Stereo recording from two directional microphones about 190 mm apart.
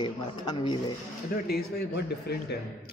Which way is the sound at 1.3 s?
55° left (ahead or behind).